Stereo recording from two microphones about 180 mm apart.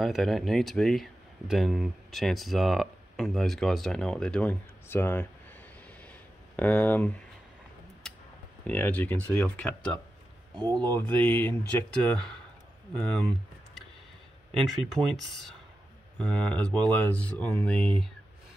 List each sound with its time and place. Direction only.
0.0 s speech: centre (ahead or behind)
6.0 s a sound: 10° left (ahead or behind)
8.6 s speech: 10° left (ahead or behind)
10.5 s speech: 25° right (ahead or behind)
11.2 s speech: 10° left (ahead or behind)
12.9 s speech: 5° left (ahead or behind)
14.5 s speech: centre (ahead or behind)